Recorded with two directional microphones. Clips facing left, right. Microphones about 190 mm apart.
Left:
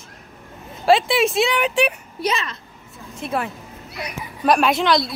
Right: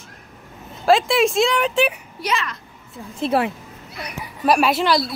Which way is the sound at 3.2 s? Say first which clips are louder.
Right 5 dB; 30° right (ahead or behind).